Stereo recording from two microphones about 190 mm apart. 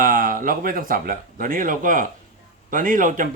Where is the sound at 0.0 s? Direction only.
45° right (ahead or behind).